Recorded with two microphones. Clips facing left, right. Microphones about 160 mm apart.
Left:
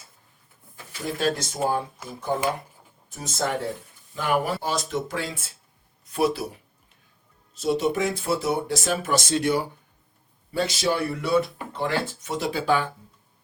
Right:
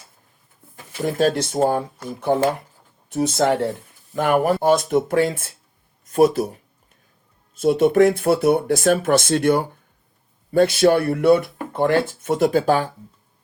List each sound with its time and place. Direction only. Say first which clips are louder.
1.2 s speech: right 6 dB; 40° right (ahead or behind)
2.3 s speech: right 7 dB; 70° right (ahead or behind)
4.1 s speech: right 7 dB; 55° right (ahead or behind)
7.5 s speech: right 8 dB; 55° right (ahead or behind)